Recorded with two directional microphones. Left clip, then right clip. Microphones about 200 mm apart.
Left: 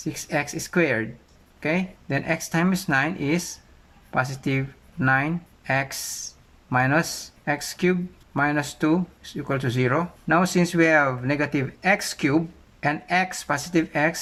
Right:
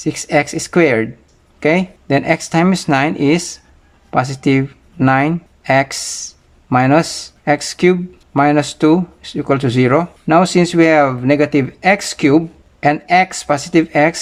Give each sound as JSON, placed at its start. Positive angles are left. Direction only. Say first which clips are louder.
{"t": 0.0, "sound": "speech", "louder": "right 12 dB", "side_deg": -25}